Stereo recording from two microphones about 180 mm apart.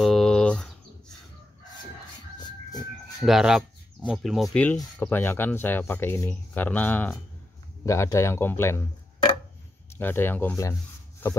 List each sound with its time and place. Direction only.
0.0 s bird: centre (ahead or behind)
3.2 s speech: centre (ahead or behind); by 8.8 s 15° left (ahead or behind)
9.9 s speech: 10° left (ahead or behind)